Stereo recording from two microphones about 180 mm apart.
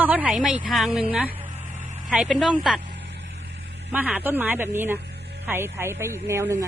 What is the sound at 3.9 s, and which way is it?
A woman's voice, 10° right (ahead or behind).